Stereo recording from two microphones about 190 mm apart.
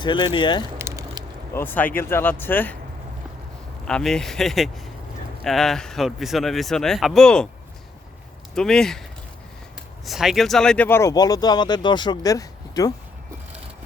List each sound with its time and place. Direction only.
0.0 s speech: 25° left (ahead or behind)
0.8 s a sound: 15° right (ahead or behind)
1.5 s speech: 10° left (ahead or behind)
3.8 s speech: 5° left (ahead or behind)
8.5 s speech: centre (ahead or behind)
10.1 s speech: centre (ahead or behind); by 12.9 s 20° left (ahead or behind)